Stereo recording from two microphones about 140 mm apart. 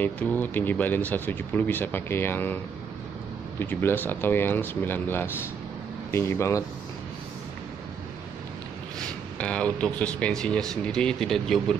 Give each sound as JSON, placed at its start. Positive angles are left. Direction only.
{"t": 0.0, "sound": "speech", "side_deg": 15}
{"t": 9.0, "sound": "speech", "side_deg": 10}